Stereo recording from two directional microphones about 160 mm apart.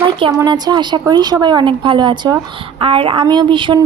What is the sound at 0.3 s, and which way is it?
A woman's voice, 25° right (ahead or behind).